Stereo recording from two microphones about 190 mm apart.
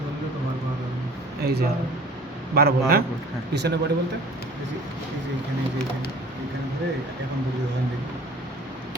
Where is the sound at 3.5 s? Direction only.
65° right (ahead or behind).